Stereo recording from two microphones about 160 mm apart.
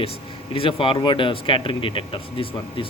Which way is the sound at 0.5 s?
35° left (ahead or behind).